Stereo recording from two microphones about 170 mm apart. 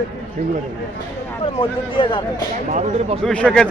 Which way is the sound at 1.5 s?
30° left (ahead or behind).